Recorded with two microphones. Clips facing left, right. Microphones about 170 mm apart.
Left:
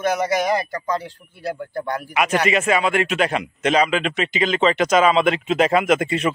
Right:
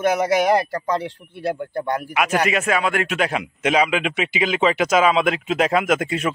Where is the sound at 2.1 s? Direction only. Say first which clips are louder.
Left 2 dB; 5° right (ahead or behind).